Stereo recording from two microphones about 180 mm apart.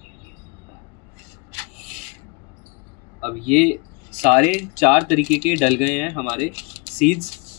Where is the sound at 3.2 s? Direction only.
40° left (ahead or behind).